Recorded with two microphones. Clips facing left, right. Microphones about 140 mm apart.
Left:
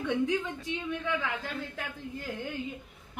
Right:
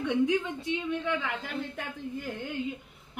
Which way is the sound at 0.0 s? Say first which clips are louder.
Right 3 dB; 15° right (ahead or behind).